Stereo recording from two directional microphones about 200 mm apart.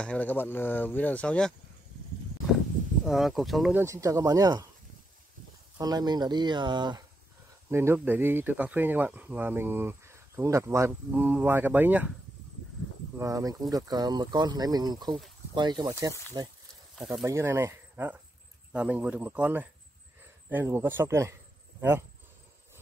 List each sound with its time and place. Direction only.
0.0 s speech: 5° left (ahead or behind)
3.1 s speech: centre (ahead or behind)
3.8 s speech: 15° right (ahead or behind)
5.8 s speech: 20° right (ahead or behind)
13.2 s speech: 15° right (ahead or behind)
17.0 s speech: centre (ahead or behind)
17.3 s speech: 15° right (ahead or behind)